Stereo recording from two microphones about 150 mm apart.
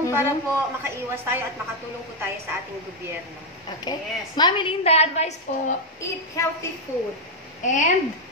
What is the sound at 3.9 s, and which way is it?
Speech, 30° left (ahead or behind).